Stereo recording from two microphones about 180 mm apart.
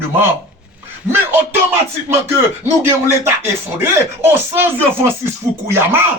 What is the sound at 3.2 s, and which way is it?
Speech, 15° right (ahead or behind).